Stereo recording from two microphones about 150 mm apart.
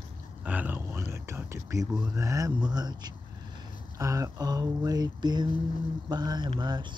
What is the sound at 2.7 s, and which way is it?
Speech, 25° right (ahead or behind).